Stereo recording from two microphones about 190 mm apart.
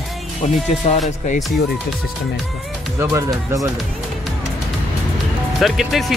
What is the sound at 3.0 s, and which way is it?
Speech, 15° right (ahead or behind).